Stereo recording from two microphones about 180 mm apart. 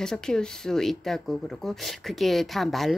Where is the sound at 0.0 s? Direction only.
5° left (ahead or behind).